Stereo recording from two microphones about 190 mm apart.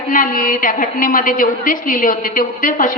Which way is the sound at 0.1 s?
45° left (ahead or behind).